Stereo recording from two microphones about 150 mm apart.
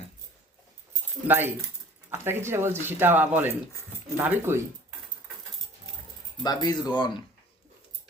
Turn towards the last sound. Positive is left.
turn(degrees=30)  # may be behind; listen again after turning